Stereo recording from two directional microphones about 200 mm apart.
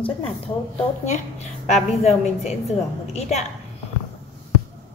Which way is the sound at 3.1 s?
35° left (ahead or behind).